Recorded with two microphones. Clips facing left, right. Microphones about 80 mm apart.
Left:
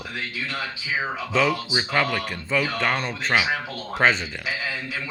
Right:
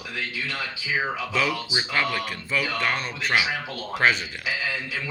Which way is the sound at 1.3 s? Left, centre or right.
Left.